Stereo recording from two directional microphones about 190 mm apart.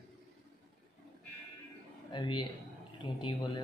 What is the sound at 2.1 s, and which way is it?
A man's voice, 25° left (ahead or behind).